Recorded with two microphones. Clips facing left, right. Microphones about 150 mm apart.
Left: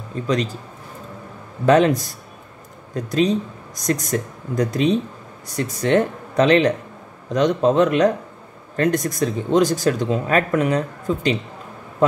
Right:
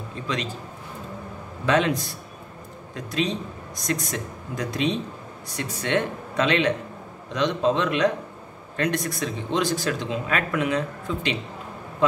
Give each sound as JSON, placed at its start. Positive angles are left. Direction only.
{"t": 0.1, "sound": "a man's voice", "side_deg": 45}
{"t": 1.7, "sound": "speech", "side_deg": 45}